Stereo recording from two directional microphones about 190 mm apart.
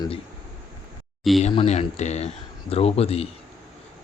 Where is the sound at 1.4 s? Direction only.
35° left (ahead or behind).